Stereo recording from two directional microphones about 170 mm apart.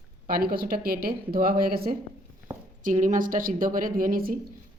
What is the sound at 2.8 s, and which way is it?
A woman's voice, 45° right (ahead or behind).